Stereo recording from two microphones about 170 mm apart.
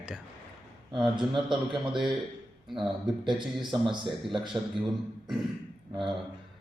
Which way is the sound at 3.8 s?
30° right (ahead or behind).